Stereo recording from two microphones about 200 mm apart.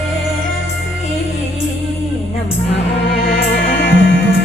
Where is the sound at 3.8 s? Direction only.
65° left (ahead or behind).